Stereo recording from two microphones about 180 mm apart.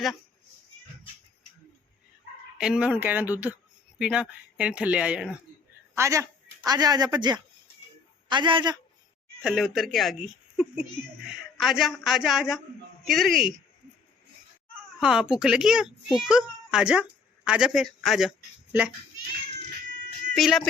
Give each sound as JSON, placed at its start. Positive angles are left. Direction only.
{"t": 2.6, "sound": "speech", "side_deg": -5}
{"t": 6.0, "sound": "a woman's voice", "side_deg": -15}
{"t": 9.4, "sound": "speech", "side_deg": -5}
{"t": 15.0, "sound": "a child's voice", "side_deg": -5}
{"t": 20.3, "sound": "speech", "side_deg": 0}